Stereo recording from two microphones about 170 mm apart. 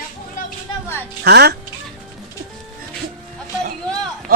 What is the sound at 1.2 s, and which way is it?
Speech, 75° right (ahead or behind).